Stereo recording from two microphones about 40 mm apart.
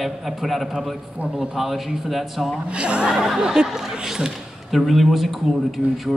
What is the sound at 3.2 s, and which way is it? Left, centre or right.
Speech, centre.